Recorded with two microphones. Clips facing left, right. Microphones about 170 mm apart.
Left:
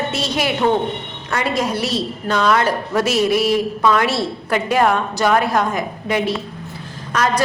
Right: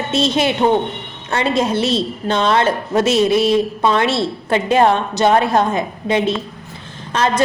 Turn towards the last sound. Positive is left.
turn(degrees=-25)  # may be behind; listen again after turning